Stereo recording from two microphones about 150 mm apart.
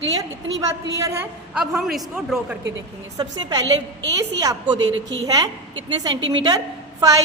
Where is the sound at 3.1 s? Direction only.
30° right (ahead or behind).